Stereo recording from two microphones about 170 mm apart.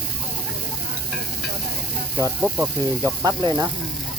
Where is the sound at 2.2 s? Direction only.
15° right (ahead or behind).